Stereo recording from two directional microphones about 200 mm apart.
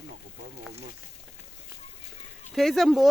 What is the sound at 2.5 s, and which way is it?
Speech, centre (ahead or behind).